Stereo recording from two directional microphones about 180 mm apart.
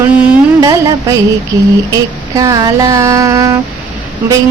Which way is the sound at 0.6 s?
20° right (ahead or behind).